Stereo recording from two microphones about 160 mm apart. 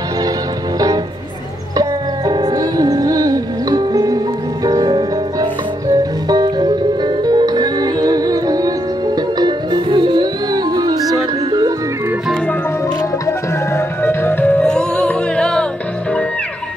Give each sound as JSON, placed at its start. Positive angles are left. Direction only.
{"t": 1.8, "sound": "music", "side_deg": -25}
{"t": 13.7, "sound": "music", "side_deg": 15}